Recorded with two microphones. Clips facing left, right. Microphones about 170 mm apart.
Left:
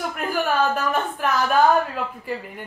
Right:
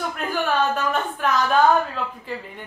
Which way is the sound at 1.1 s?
5° left (ahead or behind).